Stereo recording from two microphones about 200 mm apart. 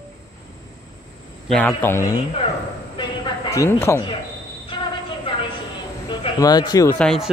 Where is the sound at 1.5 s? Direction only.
5° left (ahead or behind).